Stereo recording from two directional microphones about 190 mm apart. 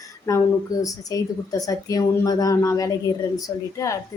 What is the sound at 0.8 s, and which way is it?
A woman's voice, 20° left (ahead or behind).